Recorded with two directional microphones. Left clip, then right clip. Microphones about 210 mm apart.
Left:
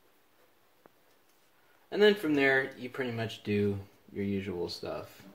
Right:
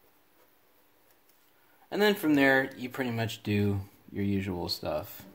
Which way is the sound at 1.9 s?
45° right (ahead or behind).